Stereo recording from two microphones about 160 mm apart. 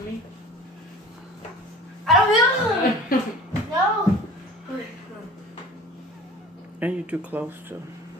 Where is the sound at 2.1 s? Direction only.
Centre (ahead or behind).